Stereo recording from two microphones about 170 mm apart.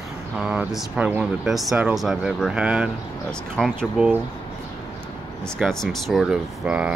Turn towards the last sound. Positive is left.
turn(degrees=-5)  # may be behind; listen again after turning